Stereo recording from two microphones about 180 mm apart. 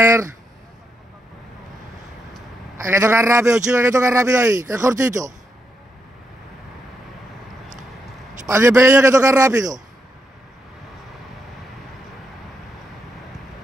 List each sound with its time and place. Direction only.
0.0 s speech: 15° right (ahead or behind)
2.8 s speech: 15° right (ahead or behind)
8.5 s speech: 15° right (ahead or behind)